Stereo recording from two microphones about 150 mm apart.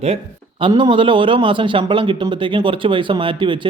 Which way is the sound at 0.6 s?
30° right (ahead or behind).